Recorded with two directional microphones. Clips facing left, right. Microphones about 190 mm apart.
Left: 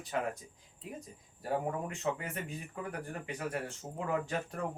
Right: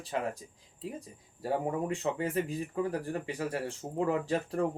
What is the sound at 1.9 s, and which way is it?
Speech, 35° right (ahead or behind).